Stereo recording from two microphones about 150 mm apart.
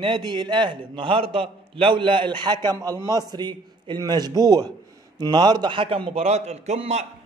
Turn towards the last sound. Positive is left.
turn(degrees=-45)  # may be behind; listen again after turning